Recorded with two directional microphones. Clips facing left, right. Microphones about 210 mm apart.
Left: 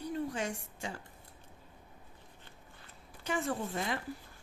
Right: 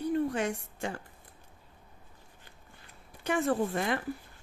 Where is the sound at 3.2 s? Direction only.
60° right (ahead or behind).